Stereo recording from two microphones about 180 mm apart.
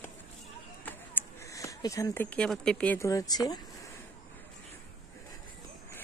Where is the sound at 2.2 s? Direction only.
5° left (ahead or behind); by 3.9 s 20° left (ahead or behind).